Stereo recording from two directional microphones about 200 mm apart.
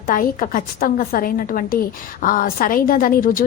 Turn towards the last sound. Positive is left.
turn(degrees=45)  # may be behind; listen again after turning